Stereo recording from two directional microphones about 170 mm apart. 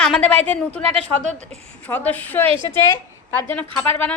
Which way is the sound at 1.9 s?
10° left (ahead or behind).